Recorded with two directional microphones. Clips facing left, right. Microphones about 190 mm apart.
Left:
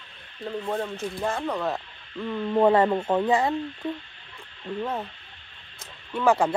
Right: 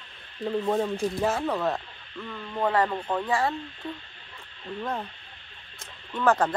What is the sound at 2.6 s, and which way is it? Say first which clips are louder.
Speech: left 6 dB; 25° left (ahead or behind).